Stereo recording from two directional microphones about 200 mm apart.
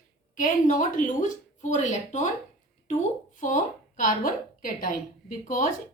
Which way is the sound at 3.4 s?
40° left (ahead or behind).